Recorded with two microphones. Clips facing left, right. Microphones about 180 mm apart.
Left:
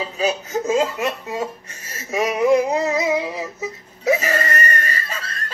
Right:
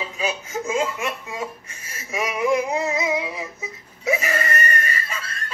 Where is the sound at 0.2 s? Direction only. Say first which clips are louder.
Left 5 dB; 35° left (ahead or behind).